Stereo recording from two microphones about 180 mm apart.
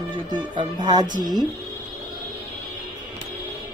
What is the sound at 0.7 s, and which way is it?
Speech, 25° right (ahead or behind).